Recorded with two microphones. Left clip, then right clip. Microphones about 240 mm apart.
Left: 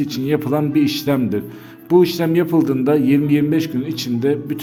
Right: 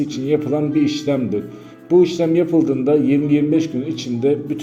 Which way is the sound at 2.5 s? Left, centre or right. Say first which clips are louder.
Even; left.